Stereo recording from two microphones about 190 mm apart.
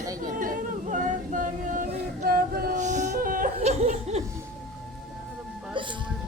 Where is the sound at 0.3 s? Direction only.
45° right (ahead or behind).